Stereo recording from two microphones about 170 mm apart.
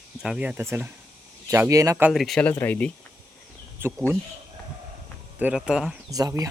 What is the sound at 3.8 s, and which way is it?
Speech, 15° right (ahead or behind).